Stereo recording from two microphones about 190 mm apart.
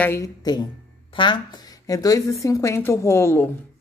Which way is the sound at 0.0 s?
15° left (ahead or behind).